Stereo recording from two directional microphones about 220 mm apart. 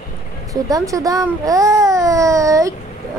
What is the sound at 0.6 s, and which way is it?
Speech, 15° right (ahead or behind).